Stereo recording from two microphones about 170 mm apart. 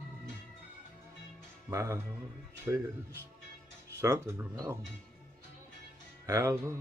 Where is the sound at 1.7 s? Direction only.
15° right (ahead or behind).